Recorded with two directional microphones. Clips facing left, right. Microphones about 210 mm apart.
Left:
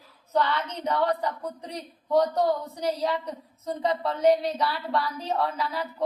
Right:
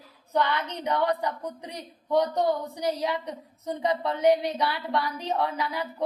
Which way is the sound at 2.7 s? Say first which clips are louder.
Left 1 dB; 15° right (ahead or behind).